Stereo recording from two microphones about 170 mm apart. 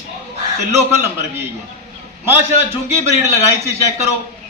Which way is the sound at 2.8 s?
15° right (ahead or behind).